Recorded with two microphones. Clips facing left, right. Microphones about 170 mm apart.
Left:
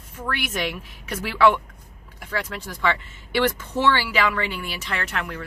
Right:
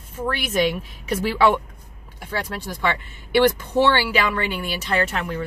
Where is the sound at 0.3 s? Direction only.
25° right (ahead or behind).